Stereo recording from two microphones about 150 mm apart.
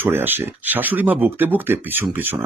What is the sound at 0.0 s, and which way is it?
Speech, 15° right (ahead or behind).